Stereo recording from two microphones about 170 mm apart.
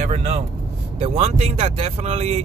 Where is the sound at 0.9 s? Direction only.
40° right (ahead or behind).